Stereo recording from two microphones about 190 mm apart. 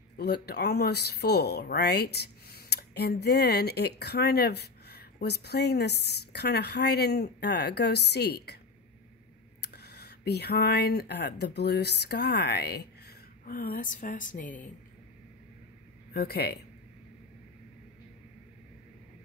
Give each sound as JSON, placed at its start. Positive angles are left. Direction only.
{"t": 0.2, "sound": "speech", "side_deg": 55}
{"t": 9.6, "sound": "speech", "side_deg": 60}
{"t": 16.1, "sound": "speech", "side_deg": 55}